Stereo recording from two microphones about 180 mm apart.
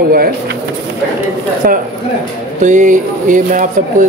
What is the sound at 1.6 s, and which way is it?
A man's voice, 50° right (ahead or behind).